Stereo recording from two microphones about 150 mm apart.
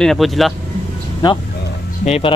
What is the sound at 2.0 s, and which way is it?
Speech, 40° left (ahead or behind).